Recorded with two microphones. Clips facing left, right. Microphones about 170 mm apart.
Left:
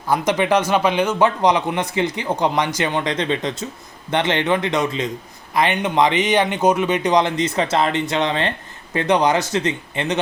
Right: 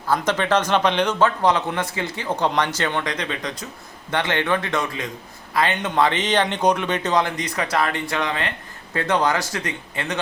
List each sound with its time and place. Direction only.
0.1 s speech: 15° left (ahead or behind)